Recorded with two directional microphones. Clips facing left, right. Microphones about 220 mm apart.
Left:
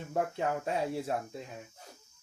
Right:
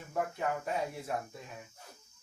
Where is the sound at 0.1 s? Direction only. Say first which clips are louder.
Left 2 dB; 30° left (ahead or behind).